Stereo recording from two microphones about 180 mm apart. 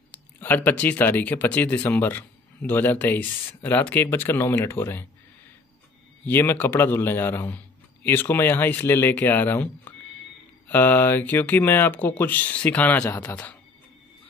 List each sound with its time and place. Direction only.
0.1 s speech: 10° left (ahead or behind)
6.2 s speech: 10° left (ahead or behind)